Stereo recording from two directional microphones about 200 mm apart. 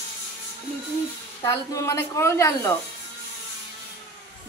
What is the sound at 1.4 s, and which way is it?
Speech, 15° left (ahead or behind).